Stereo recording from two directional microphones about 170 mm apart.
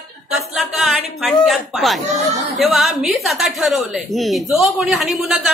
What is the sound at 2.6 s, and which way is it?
A woman's voice, centre (ahead or behind).